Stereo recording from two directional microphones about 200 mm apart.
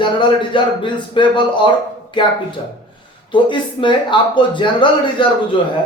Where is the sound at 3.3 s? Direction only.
25° left (ahead or behind).